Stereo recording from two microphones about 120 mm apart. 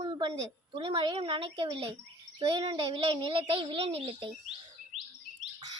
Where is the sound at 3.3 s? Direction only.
45° right (ahead or behind).